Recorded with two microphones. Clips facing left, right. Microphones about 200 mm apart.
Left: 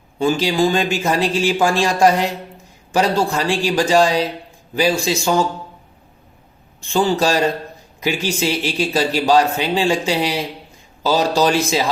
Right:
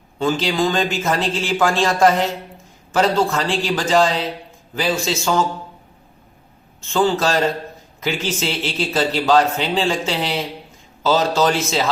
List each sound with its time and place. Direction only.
0.2 s speech: 10° left (ahead or behind)
6.8 s speech: 10° left (ahead or behind)